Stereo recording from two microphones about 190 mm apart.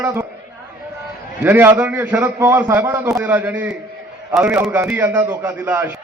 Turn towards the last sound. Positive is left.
turn(degrees=-10)  # may be behind; listen again after turning